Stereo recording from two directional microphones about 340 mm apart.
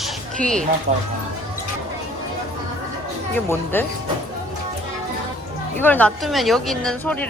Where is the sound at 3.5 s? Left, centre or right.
Centre.